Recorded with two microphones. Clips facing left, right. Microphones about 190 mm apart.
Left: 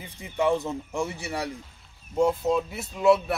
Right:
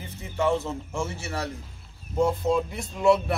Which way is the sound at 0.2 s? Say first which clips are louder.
Left 1 dB; 15° left (ahead or behind).